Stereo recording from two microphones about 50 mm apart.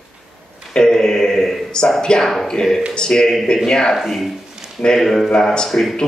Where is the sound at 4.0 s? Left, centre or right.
Centre.